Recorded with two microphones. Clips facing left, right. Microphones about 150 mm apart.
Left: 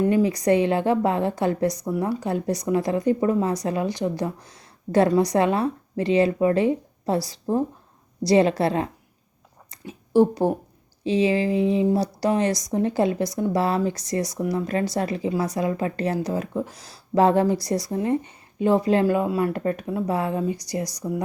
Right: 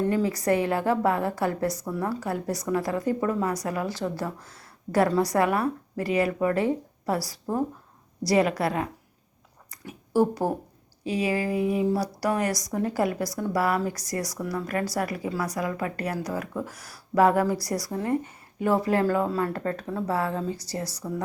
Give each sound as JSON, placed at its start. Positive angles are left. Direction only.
{"t": 0.0, "sound": "speech", "side_deg": 20}
{"t": 9.6, "sound": "a sound", "side_deg": 20}
{"t": 11.0, "sound": "speech", "side_deg": 25}